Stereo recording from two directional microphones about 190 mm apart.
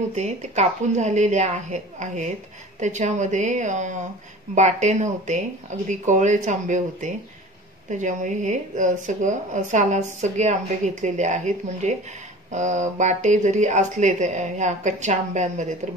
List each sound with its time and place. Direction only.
0.1 s speech: 35° right (ahead or behind)